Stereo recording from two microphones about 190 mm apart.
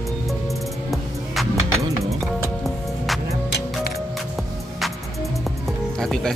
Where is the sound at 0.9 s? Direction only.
Centre (ahead or behind).